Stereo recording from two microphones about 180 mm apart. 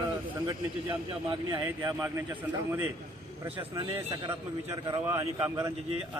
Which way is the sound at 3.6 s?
25° right (ahead or behind).